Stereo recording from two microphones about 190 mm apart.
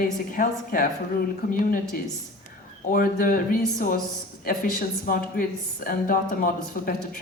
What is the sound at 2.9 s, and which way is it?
Speech, 45° left (ahead or behind).